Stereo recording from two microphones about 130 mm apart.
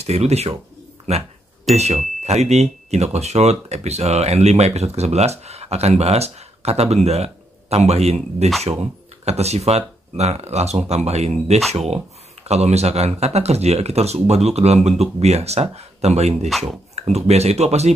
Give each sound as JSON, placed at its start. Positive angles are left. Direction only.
{"t": 0.0, "sound": "speech", "side_deg": -55}
{"t": 2.2, "sound": "speech", "side_deg": -55}